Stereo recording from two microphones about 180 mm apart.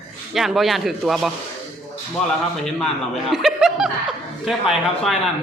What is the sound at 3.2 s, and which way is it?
Chuckle, centre (ahead or behind).